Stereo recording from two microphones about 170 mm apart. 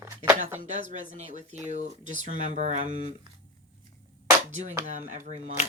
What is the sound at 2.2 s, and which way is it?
Speech, 45° right (ahead or behind).